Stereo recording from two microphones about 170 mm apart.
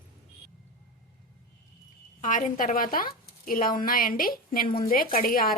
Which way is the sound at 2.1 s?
50° left (ahead or behind).